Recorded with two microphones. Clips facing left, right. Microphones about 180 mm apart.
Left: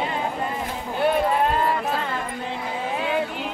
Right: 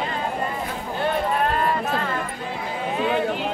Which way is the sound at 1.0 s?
20° left (ahead or behind).